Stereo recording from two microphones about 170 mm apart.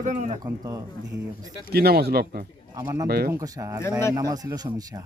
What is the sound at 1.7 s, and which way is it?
Speech, 70° right (ahead or behind).